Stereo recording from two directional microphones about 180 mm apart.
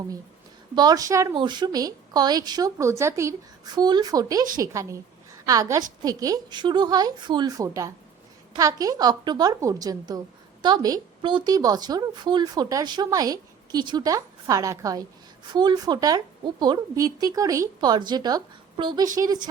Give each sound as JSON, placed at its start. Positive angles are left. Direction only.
{"t": 0.8, "sound": "a woman's voice", "side_deg": -20}